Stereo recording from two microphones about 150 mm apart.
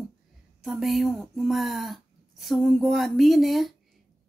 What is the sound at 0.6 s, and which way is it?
Speech, centre (ahead or behind).